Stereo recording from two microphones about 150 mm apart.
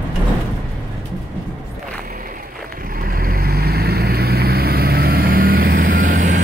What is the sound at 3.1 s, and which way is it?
Vehicle, 75° right (ahead or behind).